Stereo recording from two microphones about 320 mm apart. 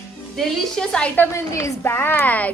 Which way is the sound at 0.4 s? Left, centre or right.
Centre.